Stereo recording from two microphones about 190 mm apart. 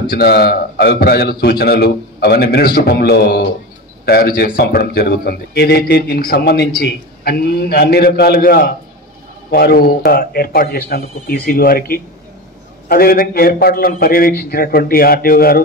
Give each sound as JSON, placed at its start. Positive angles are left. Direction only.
{"t": 0.1, "sound": "a man's voice", "side_deg": 55}